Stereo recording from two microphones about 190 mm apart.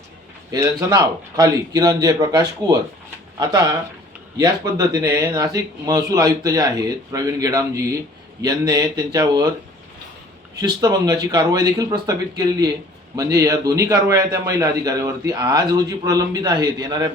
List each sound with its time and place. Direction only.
0.5 s speech: 20° right (ahead or behind)
10.5 s a man's voice: 20° right (ahead or behind)